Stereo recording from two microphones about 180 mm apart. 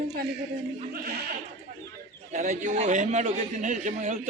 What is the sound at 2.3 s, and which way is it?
A man's voice, 45° right (ahead or behind).